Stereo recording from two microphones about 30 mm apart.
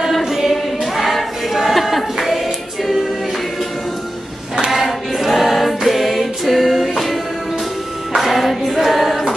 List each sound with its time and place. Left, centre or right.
0.2 s choir: centre
4.7 s choir: centre
8.2 s singing: centre